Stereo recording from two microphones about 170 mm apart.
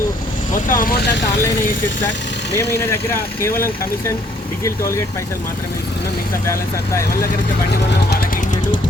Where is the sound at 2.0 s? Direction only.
90° left.